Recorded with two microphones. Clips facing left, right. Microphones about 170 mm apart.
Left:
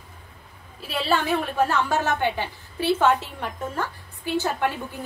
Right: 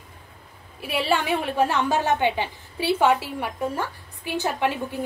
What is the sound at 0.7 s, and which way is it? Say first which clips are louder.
A woman's voice: right 1 dB; 15° right (ahead or behind).